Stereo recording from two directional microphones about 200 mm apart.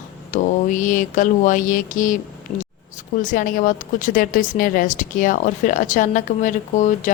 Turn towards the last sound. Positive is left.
turn(degrees=40)  # may be behind; listen again after turning